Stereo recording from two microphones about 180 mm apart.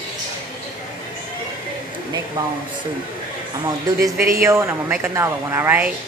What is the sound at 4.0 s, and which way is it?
A woman's voice, 15° right (ahead or behind).